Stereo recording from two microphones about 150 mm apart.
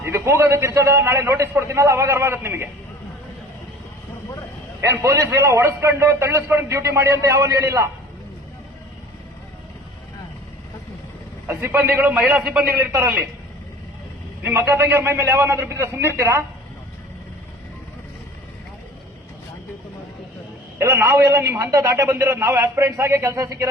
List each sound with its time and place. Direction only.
0.0 s a man's voice: 15° right (ahead or behind)
4.8 s a man's voice: 20° right (ahead or behind)
11.4 s a man's voice: 15° right (ahead or behind)
12.3 s a man's voice: centre (ahead or behind)
12.7 s a man's voice: 15° right (ahead or behind)
14.4 s a man's voice: 15° right (ahead or behind)
20.7 s a man's voice: 20° right (ahead or behind)